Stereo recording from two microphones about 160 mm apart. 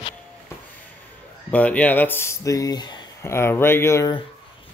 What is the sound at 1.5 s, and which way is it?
Speech, 10° left (ahead or behind).